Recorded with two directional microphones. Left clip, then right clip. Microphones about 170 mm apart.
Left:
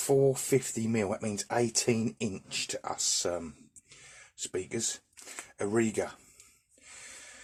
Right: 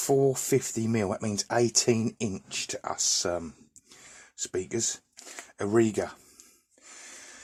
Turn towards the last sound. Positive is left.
turn(degrees=-40)  # may be behind; listen again after turning